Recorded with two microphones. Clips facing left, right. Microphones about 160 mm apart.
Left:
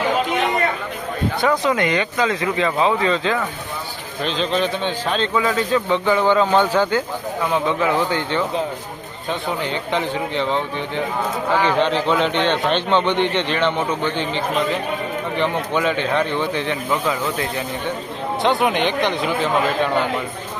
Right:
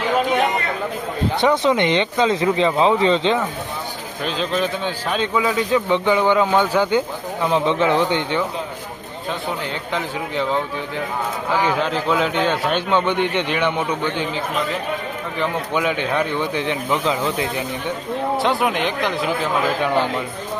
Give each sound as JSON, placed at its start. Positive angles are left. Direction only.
{"t": 1.4, "sound": "speech", "side_deg": -25}
{"t": 4.3, "sound": "a man's voice", "side_deg": -5}
{"t": 7.5, "sound": "speech", "side_deg": -25}
{"t": 9.9, "sound": "a man's voice", "side_deg": -5}
{"t": 18.4, "sound": "speech", "side_deg": 0}